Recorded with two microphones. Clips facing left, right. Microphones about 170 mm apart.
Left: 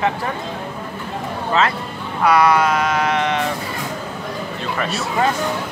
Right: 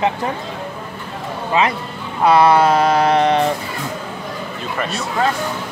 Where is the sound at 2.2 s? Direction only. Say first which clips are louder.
Right 3 dB; 25° right (ahead or behind).